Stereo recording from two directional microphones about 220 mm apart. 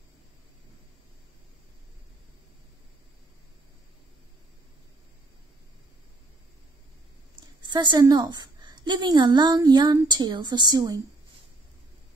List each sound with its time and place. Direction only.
7.6 s a woman's voice: 20° right (ahead or behind)